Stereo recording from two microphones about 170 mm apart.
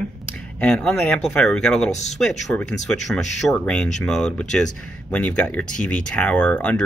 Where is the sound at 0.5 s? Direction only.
5° left (ahead or behind).